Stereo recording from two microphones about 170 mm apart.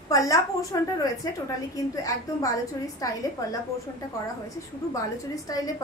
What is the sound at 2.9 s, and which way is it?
Speech, 20° left (ahead or behind).